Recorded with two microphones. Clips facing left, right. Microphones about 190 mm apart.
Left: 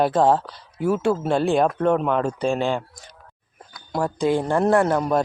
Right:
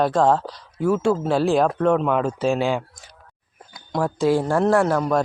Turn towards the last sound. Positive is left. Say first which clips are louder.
# even
turn(degrees=0)  # may be behind; listen again after turning